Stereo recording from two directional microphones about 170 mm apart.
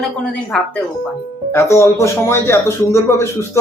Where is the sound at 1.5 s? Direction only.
15° left (ahead or behind).